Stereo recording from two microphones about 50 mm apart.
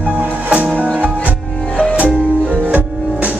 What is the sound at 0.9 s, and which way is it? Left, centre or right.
Music, right.